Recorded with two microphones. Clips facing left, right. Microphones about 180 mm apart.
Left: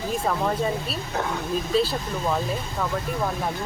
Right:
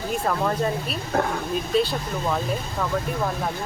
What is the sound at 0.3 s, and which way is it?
Speech, 5° left (ahead or behind).